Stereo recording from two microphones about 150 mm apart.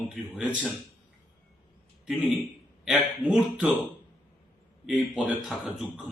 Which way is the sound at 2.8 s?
5° right (ahead or behind).